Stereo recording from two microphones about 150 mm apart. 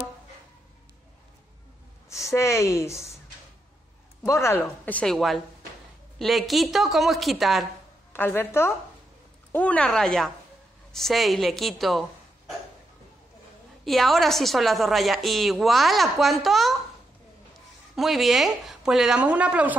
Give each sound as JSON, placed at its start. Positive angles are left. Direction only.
{"t": 2.0, "sound": "a woman's voice", "side_deg": 20}
{"t": 4.3, "sound": "a woman's voice", "side_deg": 20}
{"t": 8.1, "sound": "a woman's voice", "side_deg": 15}
{"t": 13.8, "sound": "a woman's voice", "side_deg": 0}
{"t": 17.9, "sound": "a woman's voice", "side_deg": 0}